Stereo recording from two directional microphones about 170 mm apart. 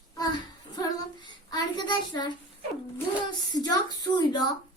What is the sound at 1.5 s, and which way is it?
Child singing, 25° left (ahead or behind).